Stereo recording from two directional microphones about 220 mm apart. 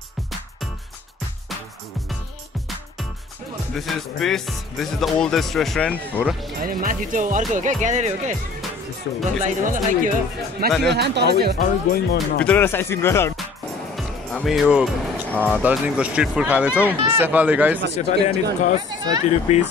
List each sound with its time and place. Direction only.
3.7 s speech: centre (ahead or behind)
6.6 s speech: 40° right (ahead or behind)
9.4 s speech: 35° right (ahead or behind)
10.8 s speech: 50° right (ahead or behind)
11.6 s speech: 40° left (ahead or behind)
12.4 s speech: 10° left (ahead or behind)
13.9 s speech: centre (ahead or behind)
17.9 s speech: 30° left (ahead or behind)
18.8 s speech: 15° right (ahead or behind)
19.2 s speech: 30° left (ahead or behind)